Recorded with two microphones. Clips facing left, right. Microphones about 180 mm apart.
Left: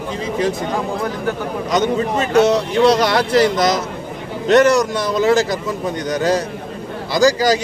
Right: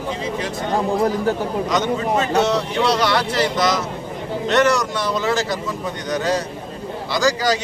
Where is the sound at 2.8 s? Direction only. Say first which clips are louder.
Left 6 dB; 40° left (ahead or behind).